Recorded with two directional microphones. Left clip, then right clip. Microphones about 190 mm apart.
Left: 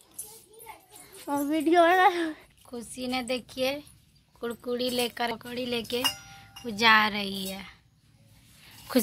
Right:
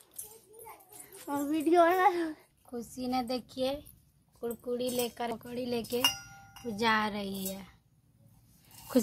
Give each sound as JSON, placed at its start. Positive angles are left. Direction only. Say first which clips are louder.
{"t": 1.2, "sound": "speech", "louder": "left 4 dB", "side_deg": 55}